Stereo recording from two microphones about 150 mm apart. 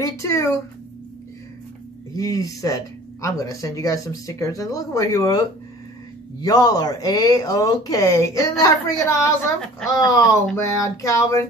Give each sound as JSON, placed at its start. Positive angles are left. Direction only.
{"t": 0.0, "sound": "speech", "side_deg": 20}
{"t": 2.1, "sound": "speech", "side_deg": 25}
{"t": 6.4, "sound": "speech", "side_deg": 25}